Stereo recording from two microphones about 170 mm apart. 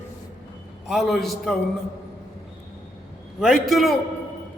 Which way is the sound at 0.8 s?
Centre (ahead or behind).